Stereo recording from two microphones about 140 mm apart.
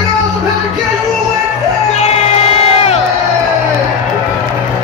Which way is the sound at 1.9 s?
50° left (ahead or behind).